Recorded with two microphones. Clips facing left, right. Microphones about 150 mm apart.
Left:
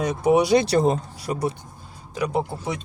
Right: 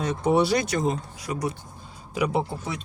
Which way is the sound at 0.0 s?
10° left (ahead or behind).